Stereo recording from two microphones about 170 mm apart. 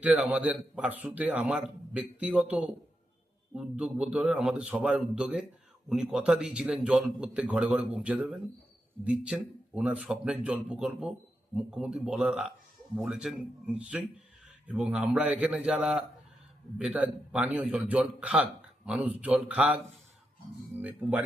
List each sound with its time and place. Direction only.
0.0 s a man's voice: 5° right (ahead or behind)
20.8 s speech: 10° right (ahead or behind)